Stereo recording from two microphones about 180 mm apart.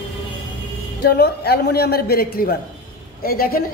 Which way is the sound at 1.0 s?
60° left (ahead or behind).